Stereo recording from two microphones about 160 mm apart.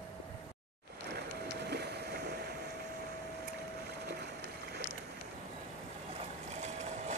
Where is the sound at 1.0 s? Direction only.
85° right.